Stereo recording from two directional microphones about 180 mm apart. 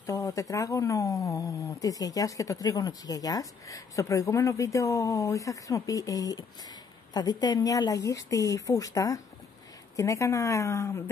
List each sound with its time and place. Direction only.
0.0 s speech: 20° left (ahead or behind)